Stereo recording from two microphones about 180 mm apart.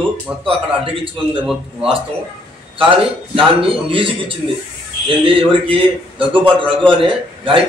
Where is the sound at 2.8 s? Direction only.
30° right (ahead or behind).